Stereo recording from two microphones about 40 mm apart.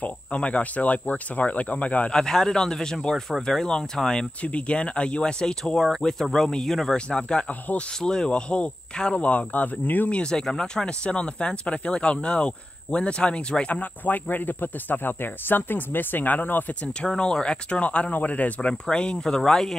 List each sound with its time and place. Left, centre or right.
0.0 s speech: left
2.1 s speech: centre
4.4 s speech: left
5.8 s speech: centre
7.1 s speech: left
9.2 s speech: left
10.3 s speech: centre
13.7 s speech: left
17.1 s speech: centre; by 18.7 s left
18.7 s speech: left
19.2 s speech: centre